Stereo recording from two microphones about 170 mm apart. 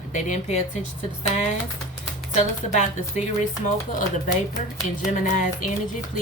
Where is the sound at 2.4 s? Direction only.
45° left (ahead or behind).